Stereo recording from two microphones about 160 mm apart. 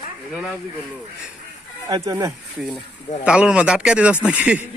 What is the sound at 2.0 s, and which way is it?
Speech, 20° right (ahead or behind).